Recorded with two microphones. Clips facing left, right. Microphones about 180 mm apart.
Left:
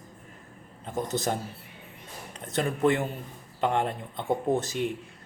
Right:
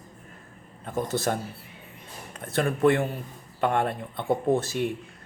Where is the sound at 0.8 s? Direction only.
20° left (ahead or behind).